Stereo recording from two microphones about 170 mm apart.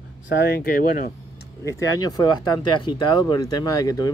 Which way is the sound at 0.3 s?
75° left (ahead or behind).